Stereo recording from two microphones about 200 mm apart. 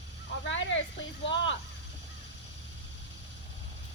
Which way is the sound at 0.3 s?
65° left (ahead or behind).